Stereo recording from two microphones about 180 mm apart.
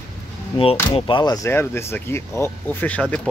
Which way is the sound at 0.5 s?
30° left (ahead or behind).